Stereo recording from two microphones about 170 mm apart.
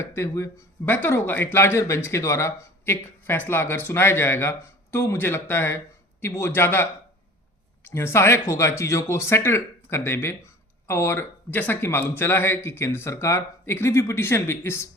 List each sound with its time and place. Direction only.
0.0 s speech: 15° left (ahead or behind)
7.9 s speech: 15° left (ahead or behind)